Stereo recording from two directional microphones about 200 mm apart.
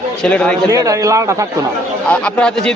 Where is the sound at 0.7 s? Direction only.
15° right (ahead or behind).